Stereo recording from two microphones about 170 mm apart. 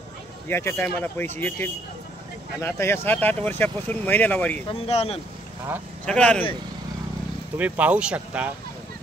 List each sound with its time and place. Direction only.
0.5 s speech: 15° left (ahead or behind)
4.6 s speech: 35° left (ahead or behind)
6.0 s speech: 5° left (ahead or behind)
7.5 s speech: 10° right (ahead or behind)